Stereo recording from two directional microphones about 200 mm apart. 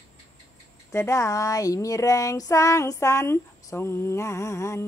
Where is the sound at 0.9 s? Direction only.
15° left (ahead or behind).